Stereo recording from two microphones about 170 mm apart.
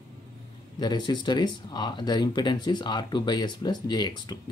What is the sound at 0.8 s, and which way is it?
Speech, 25° left (ahead or behind).